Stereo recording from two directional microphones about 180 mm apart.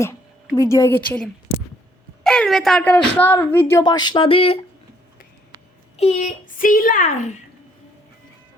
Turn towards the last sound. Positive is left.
turn(degrees=45)  # may be behind; listen again after turning